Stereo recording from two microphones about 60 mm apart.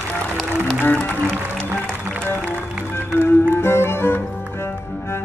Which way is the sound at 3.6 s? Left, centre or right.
Left.